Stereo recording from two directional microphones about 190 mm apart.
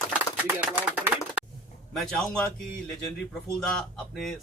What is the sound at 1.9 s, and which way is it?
Speech, 5° left (ahead or behind).